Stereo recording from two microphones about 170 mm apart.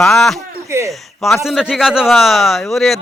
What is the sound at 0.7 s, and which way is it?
Speech, 15° right (ahead or behind).